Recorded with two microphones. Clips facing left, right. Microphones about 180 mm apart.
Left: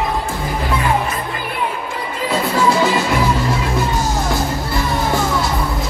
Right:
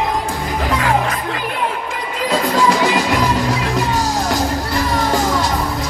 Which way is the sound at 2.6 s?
15° right (ahead or behind).